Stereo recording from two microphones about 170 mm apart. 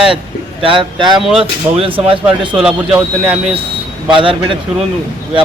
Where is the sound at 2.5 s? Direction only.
5° right (ahead or behind).